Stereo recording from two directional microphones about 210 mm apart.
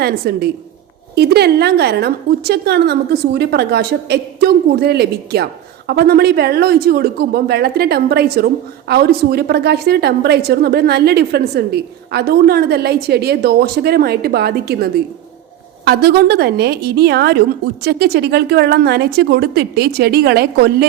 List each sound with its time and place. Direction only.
0.0 s a woman's voice: 45° right (ahead or behind)